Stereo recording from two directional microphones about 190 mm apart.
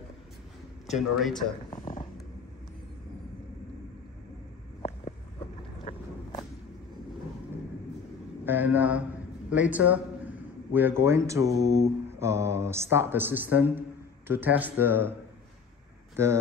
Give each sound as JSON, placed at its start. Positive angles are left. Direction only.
{"t": 0.8, "sound": "speech", "side_deg": 0}
{"t": 5.9, "sound": "walk", "side_deg": 35}
{"t": 8.5, "sound": "speech", "side_deg": -10}